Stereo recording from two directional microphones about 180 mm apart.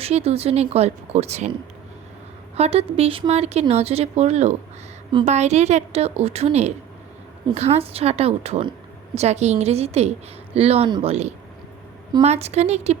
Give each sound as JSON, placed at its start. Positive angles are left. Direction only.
{"t": 0.0, "sound": "a woman's voice", "side_deg": -35}
{"t": 2.6, "sound": "a woman's voice", "side_deg": -35}